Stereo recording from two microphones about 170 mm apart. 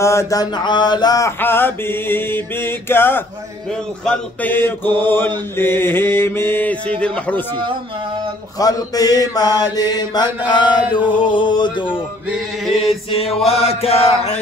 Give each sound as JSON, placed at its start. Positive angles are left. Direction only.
{"t": 0.0, "sound": "mantra", "side_deg": 15}
{"t": 8.5, "sound": "mantra", "side_deg": 20}